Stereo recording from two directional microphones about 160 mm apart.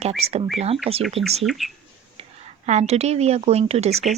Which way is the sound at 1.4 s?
Centre (ahead or behind).